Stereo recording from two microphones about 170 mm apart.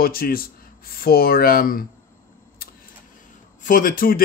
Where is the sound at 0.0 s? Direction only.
60° left (ahead or behind).